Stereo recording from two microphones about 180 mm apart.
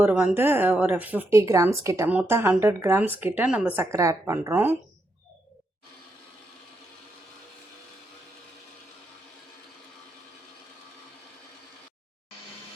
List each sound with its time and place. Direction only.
0.0 s speech: 5° right (ahead or behind)